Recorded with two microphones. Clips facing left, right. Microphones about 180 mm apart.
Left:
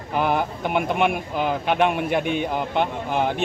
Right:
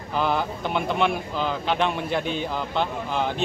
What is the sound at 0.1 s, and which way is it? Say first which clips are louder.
Speech: left 2 dB; 15° left (ahead or behind).